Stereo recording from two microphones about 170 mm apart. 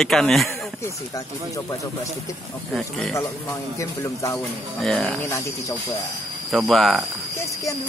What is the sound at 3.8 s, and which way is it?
Speech, 20° left (ahead or behind).